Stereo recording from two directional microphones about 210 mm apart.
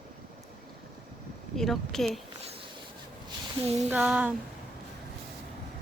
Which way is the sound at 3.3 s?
30° right (ahead or behind).